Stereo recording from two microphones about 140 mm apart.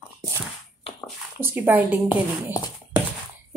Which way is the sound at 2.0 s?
30° left (ahead or behind).